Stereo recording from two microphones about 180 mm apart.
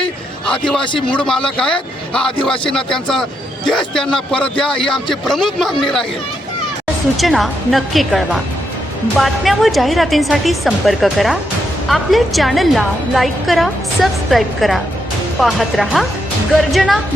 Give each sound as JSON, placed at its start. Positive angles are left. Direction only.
{"t": 0.9, "sound": "a man's voice", "side_deg": 30}
{"t": 1.2, "sound": "a woman's voice", "side_deg": 5}
{"t": 7.2, "sound": "a woman's voice", "side_deg": 0}